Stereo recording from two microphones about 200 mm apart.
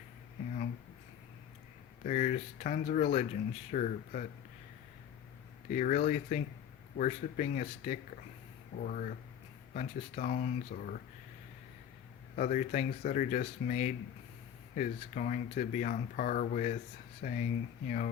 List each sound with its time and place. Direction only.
2.0 s speech: 35° left (ahead or behind)
5.6 s speech: 40° left (ahead or behind)
12.4 s speech: 40° left (ahead or behind)